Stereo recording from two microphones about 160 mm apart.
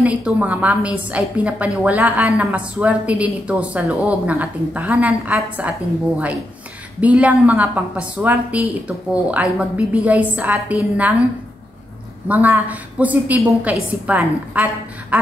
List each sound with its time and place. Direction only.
0.0 s a woman's voice: 10° right (ahead or behind)
12.3 s a woman's voice: 10° right (ahead or behind)